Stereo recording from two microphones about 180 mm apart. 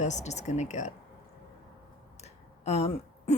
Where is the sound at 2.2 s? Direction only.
35° left (ahead or behind).